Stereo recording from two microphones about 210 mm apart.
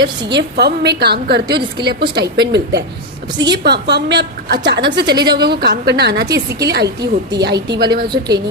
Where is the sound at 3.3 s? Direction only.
20° right (ahead or behind).